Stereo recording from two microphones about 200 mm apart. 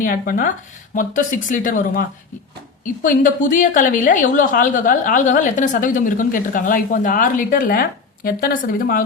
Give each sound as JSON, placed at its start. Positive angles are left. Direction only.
{"t": 0.0, "sound": "a woman's voice", "side_deg": 45}